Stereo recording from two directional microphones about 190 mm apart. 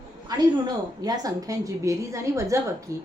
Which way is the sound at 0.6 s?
20° right (ahead or behind).